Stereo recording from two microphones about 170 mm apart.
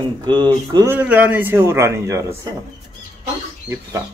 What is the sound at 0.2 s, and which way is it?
A man's voice, 25° right (ahead or behind).